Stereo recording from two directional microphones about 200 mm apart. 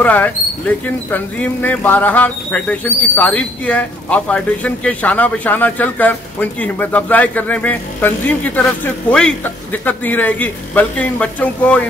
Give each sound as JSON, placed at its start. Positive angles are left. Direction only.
{"t": 0.0, "sound": "speech", "side_deg": 5}